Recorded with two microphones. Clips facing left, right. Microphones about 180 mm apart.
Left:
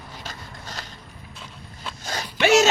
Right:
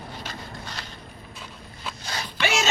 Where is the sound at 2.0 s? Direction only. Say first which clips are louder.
Left 6 dB; 45° left (ahead or behind).